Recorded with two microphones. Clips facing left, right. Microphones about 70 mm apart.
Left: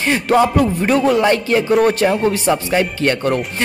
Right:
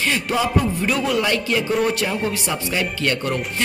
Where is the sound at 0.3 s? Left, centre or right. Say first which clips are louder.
Left 9 dB; left.